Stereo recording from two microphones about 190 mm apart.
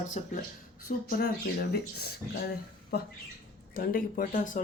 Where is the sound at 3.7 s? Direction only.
50° left (ahead or behind).